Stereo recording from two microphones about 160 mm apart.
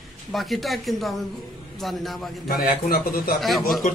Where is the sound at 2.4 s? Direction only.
65° left (ahead or behind).